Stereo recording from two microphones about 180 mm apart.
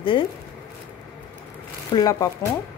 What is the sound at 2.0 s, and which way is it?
Speech, 20° left (ahead or behind).